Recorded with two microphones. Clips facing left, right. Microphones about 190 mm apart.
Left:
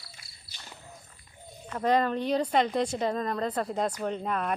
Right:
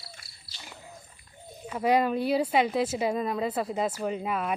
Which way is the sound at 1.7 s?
10° right (ahead or behind).